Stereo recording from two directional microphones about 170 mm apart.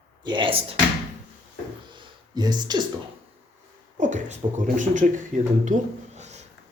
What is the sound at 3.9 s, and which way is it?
Speech, 45° right (ahead or behind).